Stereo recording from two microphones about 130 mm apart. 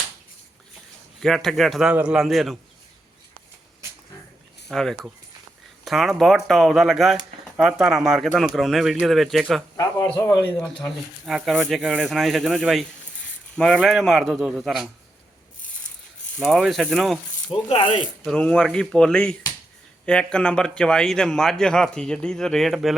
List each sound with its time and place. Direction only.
1.2 s speech: 5° left (ahead or behind)
4.7 s speech: 5° left (ahead or behind)
9.7 s speech: 30° left (ahead or behind)
10.6 s speech: centre (ahead or behind)
16.4 s speech: centre (ahead or behind)
17.7 s speech: 45° left (ahead or behind)
18.0 s speech: 5° left (ahead or behind)